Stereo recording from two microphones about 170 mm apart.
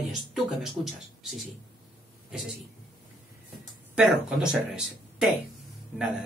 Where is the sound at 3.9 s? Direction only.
5° right (ahead or behind).